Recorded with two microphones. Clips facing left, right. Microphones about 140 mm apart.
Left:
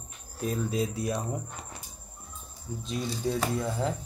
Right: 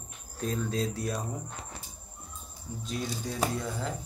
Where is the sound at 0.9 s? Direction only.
25° left (ahead or behind).